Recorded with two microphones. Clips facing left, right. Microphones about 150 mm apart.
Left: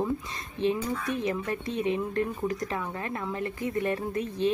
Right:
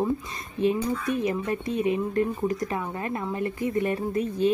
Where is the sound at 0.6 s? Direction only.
5° right (ahead or behind).